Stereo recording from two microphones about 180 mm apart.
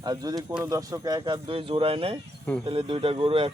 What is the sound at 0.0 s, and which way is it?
Speech, 20° right (ahead or behind).